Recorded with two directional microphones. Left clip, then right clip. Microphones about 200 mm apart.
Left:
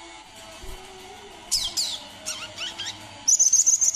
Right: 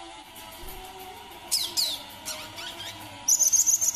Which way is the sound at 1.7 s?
10° left (ahead or behind).